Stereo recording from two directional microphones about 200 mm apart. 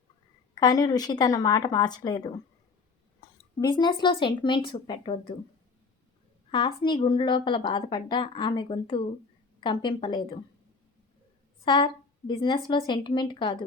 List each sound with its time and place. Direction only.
0.5 s a woman's voice: 20° left (ahead or behind)
3.6 s a woman's voice: 25° left (ahead or behind)
6.5 s a woman's voice: 25° left (ahead or behind)
11.6 s a woman's voice: 25° left (ahead or behind)